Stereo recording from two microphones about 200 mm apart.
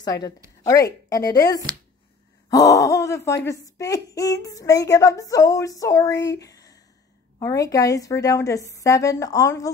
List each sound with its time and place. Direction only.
0.0 s a woman's voice: 20° left (ahead or behind)
2.7 s speech: 15° left (ahead or behind)